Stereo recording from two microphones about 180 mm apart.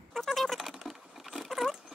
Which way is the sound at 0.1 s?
Centre (ahead or behind).